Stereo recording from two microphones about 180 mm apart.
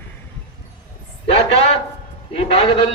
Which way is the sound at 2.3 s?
30° left (ahead or behind).